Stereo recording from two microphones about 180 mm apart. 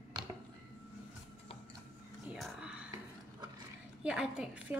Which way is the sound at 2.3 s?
Centre (ahead or behind).